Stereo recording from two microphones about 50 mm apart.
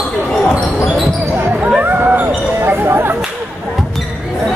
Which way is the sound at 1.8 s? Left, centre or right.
Right.